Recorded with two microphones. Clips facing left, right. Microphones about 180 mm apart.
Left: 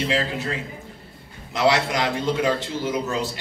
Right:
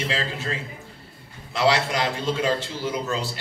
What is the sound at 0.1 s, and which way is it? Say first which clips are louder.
A man's voice: left 4 dB; 15° left (ahead or behind).